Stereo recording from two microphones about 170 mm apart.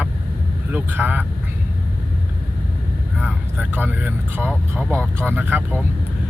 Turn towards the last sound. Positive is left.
turn(degrees=-10)  # may be behind; listen again after turning